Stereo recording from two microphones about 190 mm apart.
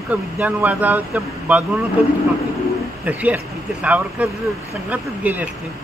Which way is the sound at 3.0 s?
10° right (ahead or behind).